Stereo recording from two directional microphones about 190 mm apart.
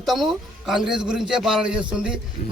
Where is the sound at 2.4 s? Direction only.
45° left (ahead or behind).